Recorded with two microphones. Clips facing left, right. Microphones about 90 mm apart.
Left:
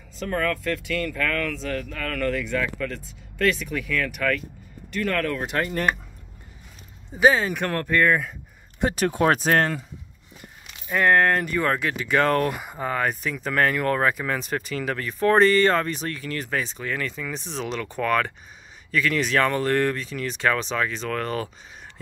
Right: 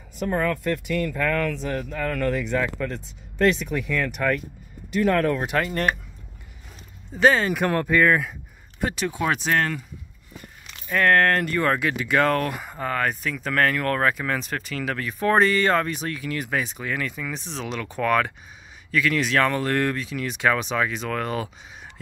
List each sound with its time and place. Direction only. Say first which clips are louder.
0.2 s speech: right 2 dB; 20° right (ahead or behind)
7.2 s speech: even; 5° left (ahead or behind)
7.6 s speech: right 2 dB; 10° right (ahead or behind)
8.9 s speech: left 5 dB; 45° left (ahead or behind)
10.8 s speech: even; 15° left (ahead or behind); by 21.5 s 5° right (ahead or behind)